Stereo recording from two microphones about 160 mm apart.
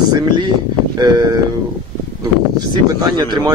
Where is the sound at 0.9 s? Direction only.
25° right (ahead or behind).